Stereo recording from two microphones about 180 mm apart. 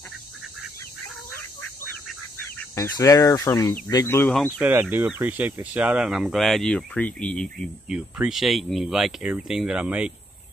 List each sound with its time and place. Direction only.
2.7 s speech: 15° left (ahead or behind)
4.3 s speech: 5° left (ahead or behind)
4.6 s speech: 10° right (ahead or behind)